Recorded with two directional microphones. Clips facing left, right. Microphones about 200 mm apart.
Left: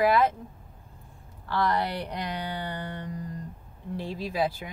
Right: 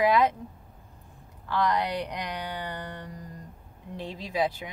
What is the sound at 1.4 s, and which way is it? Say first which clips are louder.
Speech: even; 15° right (ahead or behind).